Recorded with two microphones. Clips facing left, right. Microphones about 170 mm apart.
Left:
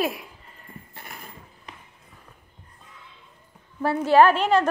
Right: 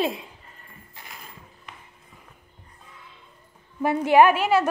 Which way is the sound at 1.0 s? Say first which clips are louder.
Left 1 dB; 55° left (ahead or behind).